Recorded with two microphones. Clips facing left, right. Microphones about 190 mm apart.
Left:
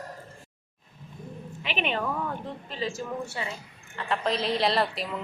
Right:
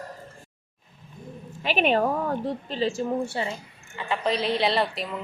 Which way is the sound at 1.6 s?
40° right (ahead or behind).